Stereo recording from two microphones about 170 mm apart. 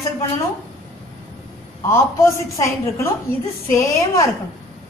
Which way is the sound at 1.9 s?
15° left (ahead or behind).